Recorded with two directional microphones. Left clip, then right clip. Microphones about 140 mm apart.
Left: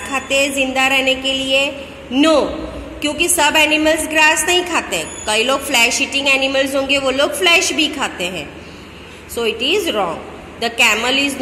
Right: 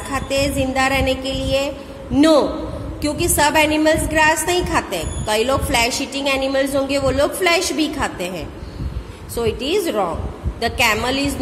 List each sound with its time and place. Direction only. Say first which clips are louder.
0.1 s a woman's voice: left 3 dB; 20° right (ahead or behind)